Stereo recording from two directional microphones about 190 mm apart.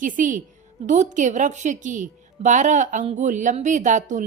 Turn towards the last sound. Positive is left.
turn(degrees=-40)  # may be behind; listen again after turning